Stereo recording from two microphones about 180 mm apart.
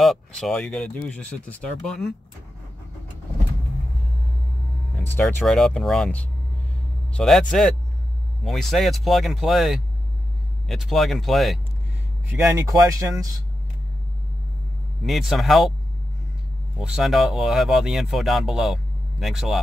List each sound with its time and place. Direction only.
0.0 s speech: centre (ahead or behind)
5.1 s speech: centre (ahead or behind)
12.3 s speech: 15° right (ahead or behind)
15.0 s speech: centre (ahead or behind)
16.7 s speech: 5° right (ahead or behind)